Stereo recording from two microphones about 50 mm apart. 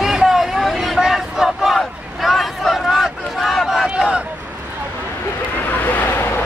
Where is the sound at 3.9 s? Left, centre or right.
Centre.